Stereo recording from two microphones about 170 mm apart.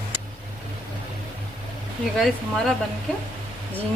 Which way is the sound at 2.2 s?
Centre (ahead or behind).